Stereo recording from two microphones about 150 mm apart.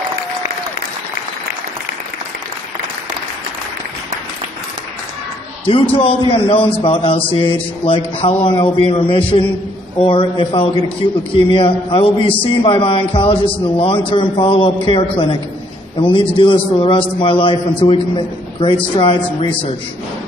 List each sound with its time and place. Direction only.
5.7 s a man's voice: 40° left (ahead or behind)